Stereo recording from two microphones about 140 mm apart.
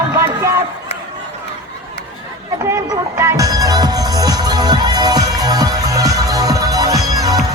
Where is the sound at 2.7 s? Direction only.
20° right (ahead or behind).